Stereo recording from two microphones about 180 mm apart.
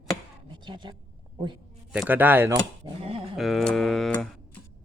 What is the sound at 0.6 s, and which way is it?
Speech, 25° right (ahead or behind).